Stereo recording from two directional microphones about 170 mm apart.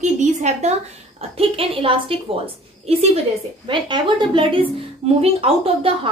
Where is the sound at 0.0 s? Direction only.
45° right (ahead or behind).